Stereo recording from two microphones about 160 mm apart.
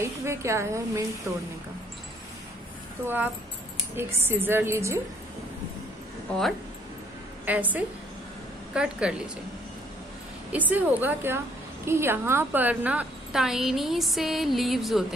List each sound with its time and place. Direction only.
0.2 s a woman's voice: 15° right (ahead or behind)
3.9 s a woman's voice: 15° right (ahead or behind)
7.4 s a woman's voice: 10° right (ahead or behind)
10.5 s a woman's voice: 10° right (ahead or behind)